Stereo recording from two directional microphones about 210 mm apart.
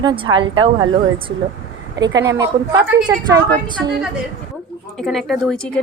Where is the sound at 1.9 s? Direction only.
20° right (ahead or behind).